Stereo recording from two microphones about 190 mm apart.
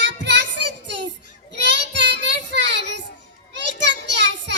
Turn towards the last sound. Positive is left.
turn(degrees=-65)  # may be behind; listen again after turning